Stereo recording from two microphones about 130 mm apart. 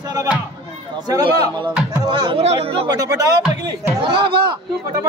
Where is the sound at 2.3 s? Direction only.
50° right (ahead or behind).